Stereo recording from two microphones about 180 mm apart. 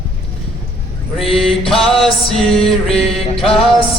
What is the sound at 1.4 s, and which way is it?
Music, centre (ahead or behind).